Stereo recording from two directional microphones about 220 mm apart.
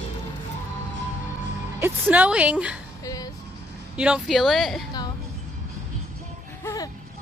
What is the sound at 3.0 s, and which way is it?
Music, 15° left (ahead or behind).